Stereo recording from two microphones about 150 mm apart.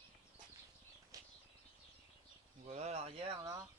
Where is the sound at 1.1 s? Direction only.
20° right (ahead or behind).